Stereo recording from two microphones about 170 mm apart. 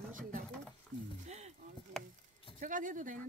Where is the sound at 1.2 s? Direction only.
40° right (ahead or behind).